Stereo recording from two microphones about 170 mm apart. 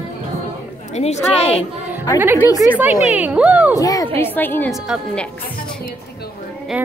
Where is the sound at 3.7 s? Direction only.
20° left (ahead or behind).